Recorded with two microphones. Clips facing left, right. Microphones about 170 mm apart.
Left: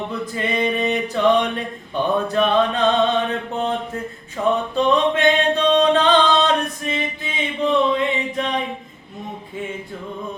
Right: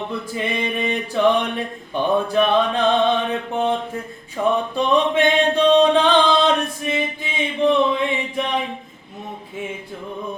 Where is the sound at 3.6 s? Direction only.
10° right (ahead or behind).